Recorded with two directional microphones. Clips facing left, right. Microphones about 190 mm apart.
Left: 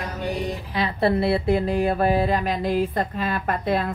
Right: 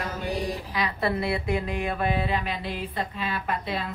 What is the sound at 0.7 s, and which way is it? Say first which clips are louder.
Speech: left 7 dB; 30° left (ahead or behind).